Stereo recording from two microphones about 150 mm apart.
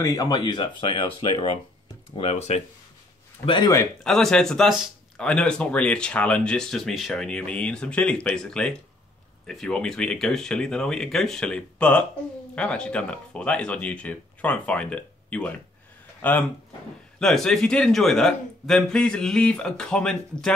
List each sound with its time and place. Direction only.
0.0 s speech: 25° left (ahead or behind)
2.1 s speech: 45° left (ahead or behind)
3.4 s speech: 30° left (ahead or behind)
4.0 s speech: 5° left (ahead or behind)